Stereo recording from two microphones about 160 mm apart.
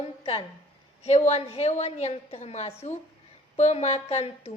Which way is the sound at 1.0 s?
40° left (ahead or behind).